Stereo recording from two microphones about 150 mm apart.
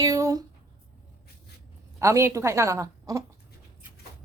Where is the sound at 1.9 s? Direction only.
15° right (ahead or behind).